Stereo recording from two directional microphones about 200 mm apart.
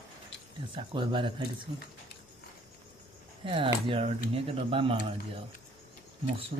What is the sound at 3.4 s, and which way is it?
Speech, 25° right (ahead or behind).